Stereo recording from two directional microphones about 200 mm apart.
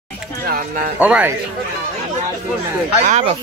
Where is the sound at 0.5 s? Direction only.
45° right (ahead or behind).